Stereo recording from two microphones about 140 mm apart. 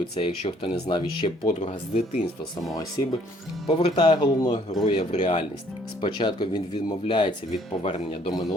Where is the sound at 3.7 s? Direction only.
50° left (ahead or behind).